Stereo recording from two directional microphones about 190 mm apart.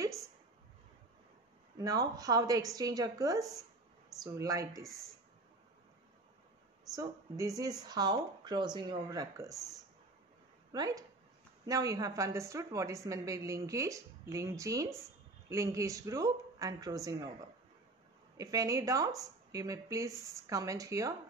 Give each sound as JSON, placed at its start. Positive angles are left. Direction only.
{"t": 1.8, "sound": "a woman's voice", "side_deg": -20}
{"t": 7.0, "sound": "a woman's voice", "side_deg": -15}
{"t": 10.7, "sound": "a woman's voice", "side_deg": -20}
{"t": 18.4, "sound": "a woman's voice", "side_deg": -20}